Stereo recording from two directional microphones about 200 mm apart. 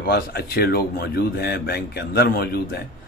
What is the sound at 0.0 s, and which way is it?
Speech, 50° left (ahead or behind).